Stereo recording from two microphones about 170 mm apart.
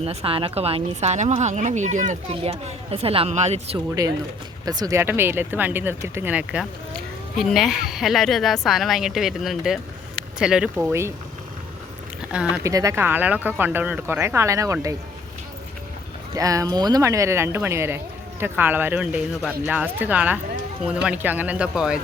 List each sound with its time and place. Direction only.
0.0 s speech: 35° right (ahead or behind)
4.0 s speech: 20° right (ahead or behind); by 10.9 s 5° right (ahead or behind)
12.3 s speech: 5° right (ahead or behind)
12.6 s speech: 20° right (ahead or behind)
16.3 s speech: 20° right (ahead or behind)